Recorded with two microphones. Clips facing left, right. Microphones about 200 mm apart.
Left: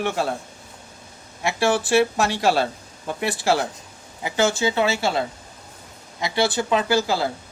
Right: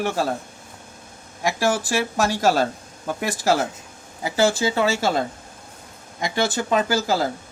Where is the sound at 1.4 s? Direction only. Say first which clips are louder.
Left 1 dB; 40° right (ahead or behind).